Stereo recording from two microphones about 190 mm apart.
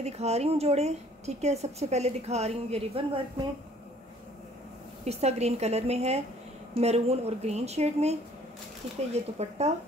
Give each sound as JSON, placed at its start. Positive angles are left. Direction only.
{"t": 0.0, "sound": "a woman's voice", "side_deg": -35}
{"t": 5.0, "sound": "a woman's voice", "side_deg": -35}